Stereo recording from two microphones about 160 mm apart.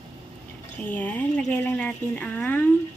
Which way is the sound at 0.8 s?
10° left (ahead or behind).